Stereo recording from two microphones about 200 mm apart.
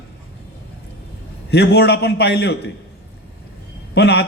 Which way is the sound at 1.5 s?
55° left (ahead or behind).